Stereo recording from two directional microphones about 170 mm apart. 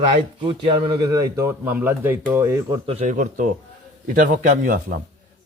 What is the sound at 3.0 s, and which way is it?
A man's voice, 50° right (ahead or behind).